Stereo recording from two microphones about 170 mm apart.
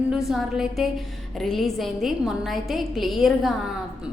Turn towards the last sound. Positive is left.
turn(degrees=0)  # may be behind; listen again after turning